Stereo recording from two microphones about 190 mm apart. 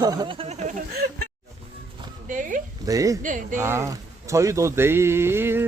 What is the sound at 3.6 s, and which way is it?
Speech, 15° right (ahead or behind).